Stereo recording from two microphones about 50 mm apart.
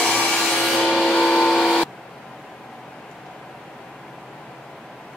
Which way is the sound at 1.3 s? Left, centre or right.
Centre.